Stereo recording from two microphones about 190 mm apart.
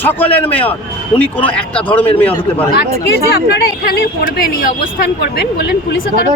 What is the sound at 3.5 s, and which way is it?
Speech, 55° left (ahead or behind).